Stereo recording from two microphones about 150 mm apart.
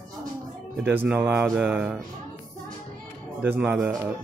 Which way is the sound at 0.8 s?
15° right (ahead or behind).